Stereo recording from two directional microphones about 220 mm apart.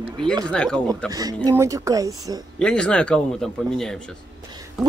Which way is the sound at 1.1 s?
15° right (ahead or behind).